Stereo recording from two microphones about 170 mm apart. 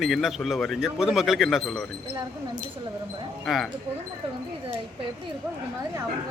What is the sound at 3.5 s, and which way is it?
Speech, centre (ahead or behind).